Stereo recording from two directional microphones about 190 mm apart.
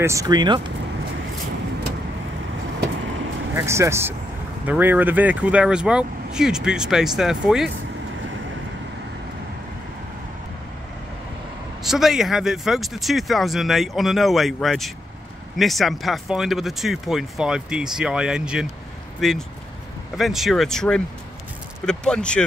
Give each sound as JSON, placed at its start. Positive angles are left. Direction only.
{"t": 0.0, "sound": "speech", "side_deg": -15}
{"t": 3.5, "sound": "speech", "side_deg": -15}
{"t": 11.8, "sound": "speech", "side_deg": 0}